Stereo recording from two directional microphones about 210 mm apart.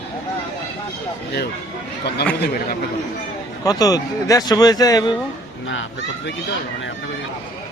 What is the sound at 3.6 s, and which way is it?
Speech, 15° left (ahead or behind).